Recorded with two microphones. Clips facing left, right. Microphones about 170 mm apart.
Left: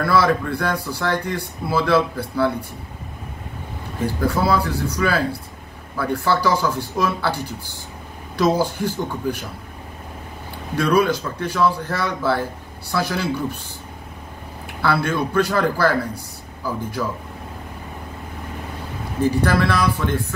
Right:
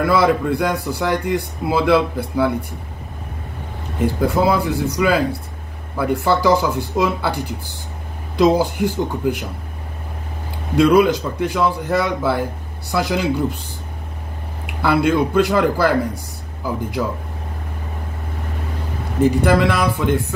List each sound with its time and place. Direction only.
0.0 s speech: 20° right (ahead or behind)
4.0 s speech: 20° right (ahead or behind)
10.8 s speech: 20° right (ahead or behind)
14.8 s speech: 15° right (ahead or behind)
19.2 s speech: 20° right (ahead or behind)